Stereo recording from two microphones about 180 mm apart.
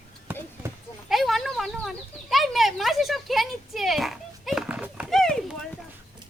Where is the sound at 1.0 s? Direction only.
Centre (ahead or behind).